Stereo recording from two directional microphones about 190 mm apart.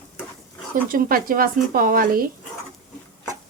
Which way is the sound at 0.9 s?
50° right (ahead or behind).